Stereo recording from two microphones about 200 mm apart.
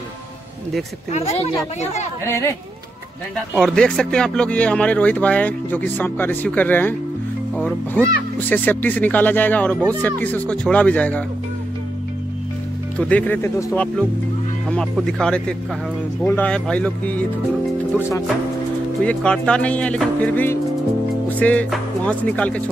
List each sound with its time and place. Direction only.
1.1 s speech: 30° left (ahead or behind)
2.2 s speech: 10° left (ahead or behind)
3.5 s speech: 5° left (ahead or behind)
13.1 s speech: 10° left (ahead or behind)
19.0 s speech: 5° left (ahead or behind)